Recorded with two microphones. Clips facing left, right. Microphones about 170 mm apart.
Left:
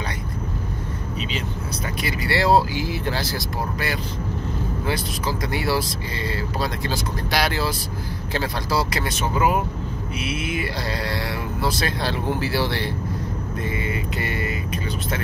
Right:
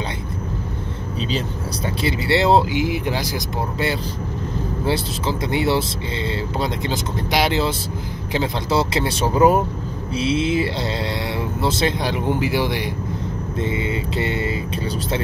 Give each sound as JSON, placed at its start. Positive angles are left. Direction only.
{"t": 2.0, "sound": "speech", "side_deg": -25}
{"t": 13.6, "sound": "vehicle", "side_deg": -25}